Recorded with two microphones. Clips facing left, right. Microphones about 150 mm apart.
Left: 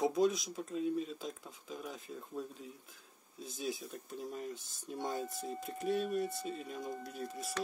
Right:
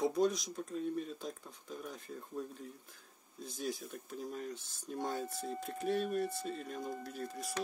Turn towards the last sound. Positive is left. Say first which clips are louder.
# even
turn(degrees=0)  # may be behind; listen again after turning